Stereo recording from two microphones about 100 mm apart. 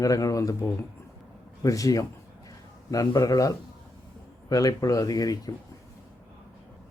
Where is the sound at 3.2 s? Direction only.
35° left (ahead or behind).